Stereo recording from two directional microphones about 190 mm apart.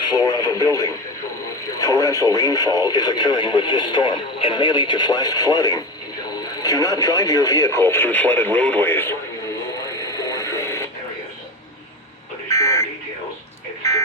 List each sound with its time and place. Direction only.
0.0 s radio: 20° left (ahead or behind)
1.7 s speech: 15° left (ahead or behind)
9.7 s radio: 20° left (ahead or behind)
12.5 s buzzer: 15° left (ahead or behind)